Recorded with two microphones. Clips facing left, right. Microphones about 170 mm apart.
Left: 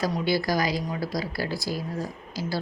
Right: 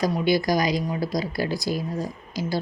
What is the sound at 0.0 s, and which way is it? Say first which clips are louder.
A woman's voice: right 3 dB; 15° right (ahead or behind).